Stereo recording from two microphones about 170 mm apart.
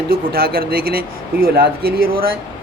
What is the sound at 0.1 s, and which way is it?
Speech, 60° right (ahead or behind).